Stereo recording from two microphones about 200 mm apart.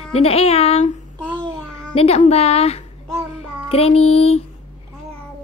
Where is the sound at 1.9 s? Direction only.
30° left (ahead or behind).